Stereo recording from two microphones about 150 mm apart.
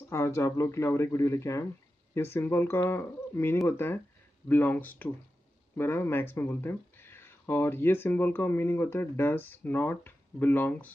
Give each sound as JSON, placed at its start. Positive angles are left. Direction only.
{"t": 0.1, "sound": "speech", "side_deg": 20}